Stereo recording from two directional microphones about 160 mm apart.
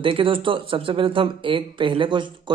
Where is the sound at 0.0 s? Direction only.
35° right (ahead or behind).